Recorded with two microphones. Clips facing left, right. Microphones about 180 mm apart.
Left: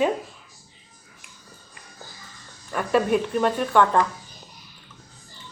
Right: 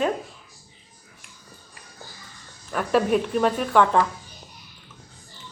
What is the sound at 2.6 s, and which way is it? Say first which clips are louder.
Speech: even; centre (ahead or behind).